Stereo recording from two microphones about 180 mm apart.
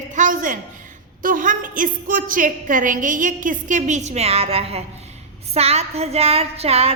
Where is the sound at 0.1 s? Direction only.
45° right (ahead or behind).